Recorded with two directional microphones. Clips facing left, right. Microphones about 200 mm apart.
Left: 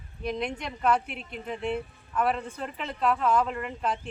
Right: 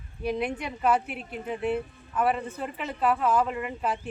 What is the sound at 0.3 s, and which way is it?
Speech, 5° right (ahead or behind).